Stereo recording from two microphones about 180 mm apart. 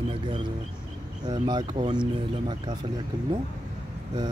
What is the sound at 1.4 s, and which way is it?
Speech, 20° right (ahead or behind).